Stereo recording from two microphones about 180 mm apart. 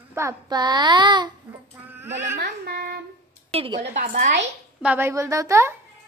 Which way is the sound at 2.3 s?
65° right (ahead or behind).